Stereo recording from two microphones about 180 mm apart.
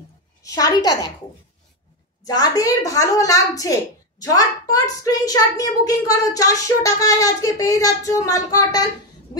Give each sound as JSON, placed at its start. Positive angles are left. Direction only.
{"t": 0.4, "sound": "a child's voice", "side_deg": 20}
{"t": 2.2, "sound": "a child's voice", "side_deg": 20}